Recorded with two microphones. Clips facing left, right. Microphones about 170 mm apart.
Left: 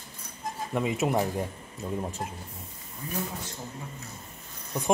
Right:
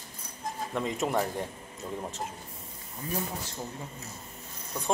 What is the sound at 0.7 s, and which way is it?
Speech, 5° left (ahead or behind).